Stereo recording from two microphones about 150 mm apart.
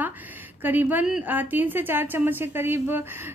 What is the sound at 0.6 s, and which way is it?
A woman's voice, 10° right (ahead or behind).